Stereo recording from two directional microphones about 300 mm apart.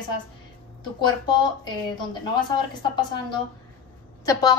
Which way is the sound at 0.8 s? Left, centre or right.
Centre.